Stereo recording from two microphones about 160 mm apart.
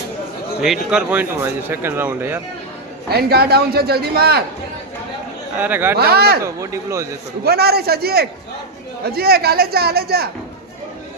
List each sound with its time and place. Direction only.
0.6 s speech: 5° right (ahead or behind)
3.1 s a man's voice: 80° right
5.5 s speech: 10° right (ahead or behind)
6.0 s a man's voice: 80° right
6.4 s speech: 20° right (ahead or behind)
7.4 s a man's voice: 80° right